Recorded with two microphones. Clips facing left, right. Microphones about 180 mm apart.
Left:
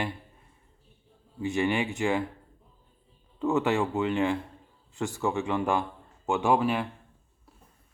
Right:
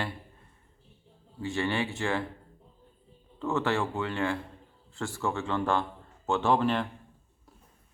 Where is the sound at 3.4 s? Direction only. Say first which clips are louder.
Left 3 dB; 15° left (ahead or behind).